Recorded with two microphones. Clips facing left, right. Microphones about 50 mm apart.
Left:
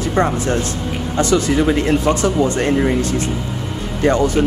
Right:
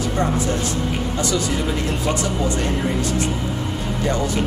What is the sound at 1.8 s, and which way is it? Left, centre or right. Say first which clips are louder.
Speech: left 6 dB; left.